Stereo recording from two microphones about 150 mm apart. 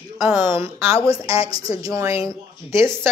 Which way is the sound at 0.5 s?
15° right (ahead or behind).